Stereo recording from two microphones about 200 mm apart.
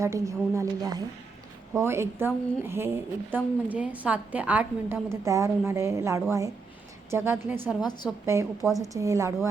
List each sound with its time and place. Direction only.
0.0 s a woman's voice: 15° right (ahead or behind)
7.8 s a woman's voice: 20° left (ahead or behind)
8.8 s a woman's voice: 15° right (ahead or behind)